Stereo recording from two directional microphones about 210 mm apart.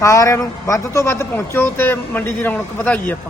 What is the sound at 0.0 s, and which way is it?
A man's voice, 15° left (ahead or behind).